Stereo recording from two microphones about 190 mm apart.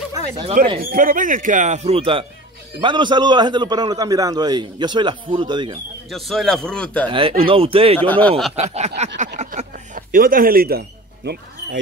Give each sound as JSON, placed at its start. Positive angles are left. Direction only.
{"t": 0.1, "sound": "speech", "side_deg": -25}
{"t": 0.7, "sound": "a man's voice", "side_deg": -45}
{"t": 6.0, "sound": "a man's voice", "side_deg": 0}
{"t": 7.1, "sound": "a man's voice", "side_deg": -30}
{"t": 8.0, "sound": "speech", "side_deg": 10}
{"t": 8.5, "sound": "snicker", "side_deg": -35}
{"t": 9.4, "sound": "a sound", "side_deg": -40}